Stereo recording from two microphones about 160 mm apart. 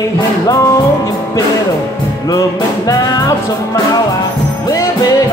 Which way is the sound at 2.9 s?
25° left (ahead or behind).